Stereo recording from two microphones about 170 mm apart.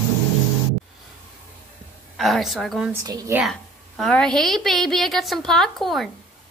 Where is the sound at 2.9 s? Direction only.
20° right (ahead or behind).